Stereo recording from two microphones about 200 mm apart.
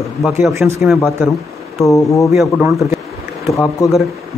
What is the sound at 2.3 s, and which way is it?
Speech, centre (ahead or behind).